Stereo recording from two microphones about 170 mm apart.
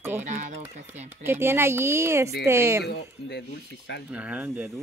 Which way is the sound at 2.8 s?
80° left.